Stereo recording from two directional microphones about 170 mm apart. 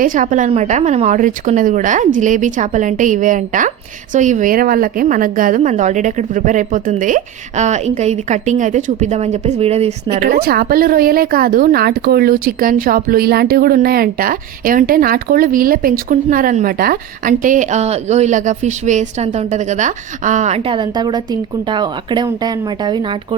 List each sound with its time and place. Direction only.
0.0 s a woman's voice: 50° right (ahead or behind)
10.2 s a woman's voice: 60° right (ahead or behind); by 23.1 s 25° right (ahead or behind)